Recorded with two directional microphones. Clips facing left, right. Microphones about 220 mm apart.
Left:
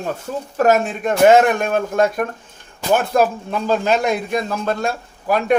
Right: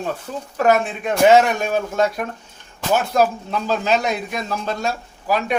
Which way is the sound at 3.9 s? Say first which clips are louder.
Left 3 dB; 50° left (ahead or behind).